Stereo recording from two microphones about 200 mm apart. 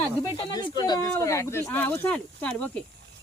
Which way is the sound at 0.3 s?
20° left (ahead or behind).